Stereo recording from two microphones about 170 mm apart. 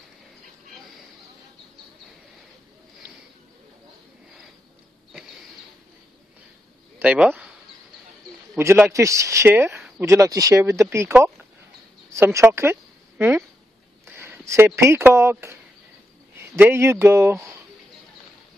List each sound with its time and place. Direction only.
7.0 s speech: 5° right (ahead or behind)
8.5 s speech: 15° right (ahead or behind)
14.0 s speech: 15° right (ahead or behind)
16.5 s speech: 15° right (ahead or behind)